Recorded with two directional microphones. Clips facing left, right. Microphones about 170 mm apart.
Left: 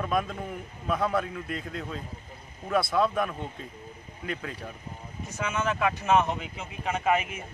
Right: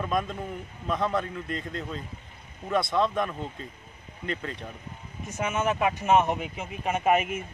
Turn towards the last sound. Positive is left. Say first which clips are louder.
# right 2 dB
turn(degrees=-20)  # may be behind; listen again after turning